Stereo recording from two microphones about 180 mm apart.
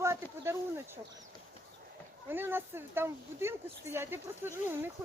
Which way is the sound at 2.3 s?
10° right (ahead or behind).